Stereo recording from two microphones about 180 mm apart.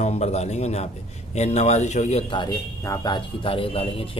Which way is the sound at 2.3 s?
25° left (ahead or behind).